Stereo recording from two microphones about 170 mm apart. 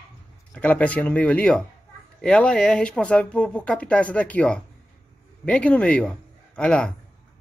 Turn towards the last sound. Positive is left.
turn(degrees=5)  # may be behind; listen again after turning